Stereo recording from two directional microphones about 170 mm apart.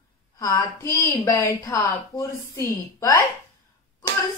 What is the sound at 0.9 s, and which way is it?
A woman's voice, 20° left (ahead or behind).